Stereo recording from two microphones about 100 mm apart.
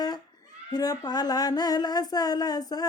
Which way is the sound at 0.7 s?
40° left (ahead or behind).